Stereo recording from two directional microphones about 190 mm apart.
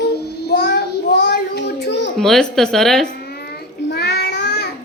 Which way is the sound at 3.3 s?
55° left (ahead or behind).